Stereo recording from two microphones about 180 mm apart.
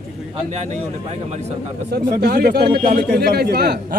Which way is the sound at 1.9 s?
60° right (ahead or behind).